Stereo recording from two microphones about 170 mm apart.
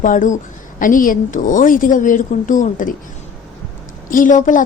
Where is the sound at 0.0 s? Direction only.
50° left (ahead or behind).